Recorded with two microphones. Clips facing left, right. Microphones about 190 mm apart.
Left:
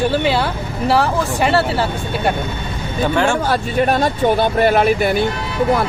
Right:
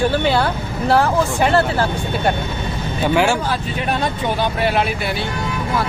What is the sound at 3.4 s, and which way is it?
Speech, 45° left (ahead or behind).